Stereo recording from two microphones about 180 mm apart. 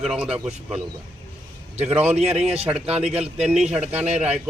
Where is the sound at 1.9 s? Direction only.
10° right (ahead or behind).